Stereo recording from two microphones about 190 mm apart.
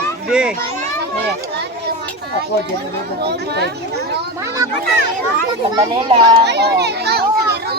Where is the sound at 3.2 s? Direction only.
60° right (ahead or behind).